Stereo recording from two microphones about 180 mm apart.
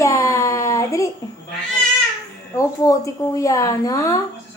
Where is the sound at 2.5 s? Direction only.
20° left (ahead or behind).